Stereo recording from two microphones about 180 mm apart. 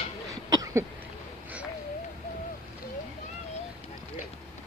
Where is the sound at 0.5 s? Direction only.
20° right (ahead or behind).